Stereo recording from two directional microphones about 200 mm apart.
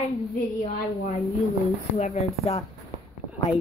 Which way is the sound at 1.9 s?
35° left (ahead or behind).